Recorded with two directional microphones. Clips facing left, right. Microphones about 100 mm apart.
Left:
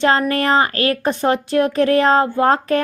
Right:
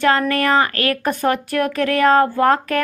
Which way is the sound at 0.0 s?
25° left (ahead or behind).